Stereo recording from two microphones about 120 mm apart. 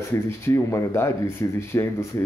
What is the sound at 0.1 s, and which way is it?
Speech, 25° left (ahead or behind).